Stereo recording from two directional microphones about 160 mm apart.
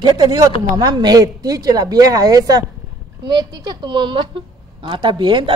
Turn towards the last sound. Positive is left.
turn(degrees=-30)  # may be behind; listen again after turning